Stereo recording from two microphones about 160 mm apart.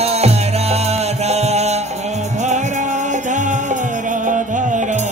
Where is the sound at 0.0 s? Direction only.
40° right (ahead or behind).